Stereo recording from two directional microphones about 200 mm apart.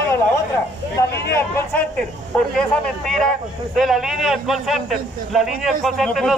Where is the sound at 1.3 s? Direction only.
5° left (ahead or behind).